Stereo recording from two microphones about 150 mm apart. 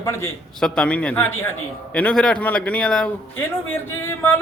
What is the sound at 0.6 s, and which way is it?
A man's voice, 5° left (ahead or behind).